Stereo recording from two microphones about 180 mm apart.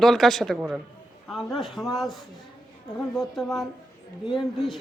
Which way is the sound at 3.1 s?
5° left (ahead or behind).